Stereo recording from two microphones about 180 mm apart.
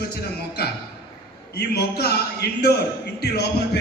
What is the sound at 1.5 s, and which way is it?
A man's voice, 60° left (ahead or behind).